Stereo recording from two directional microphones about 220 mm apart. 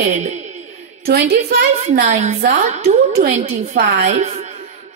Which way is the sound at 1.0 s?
45° right (ahead or behind).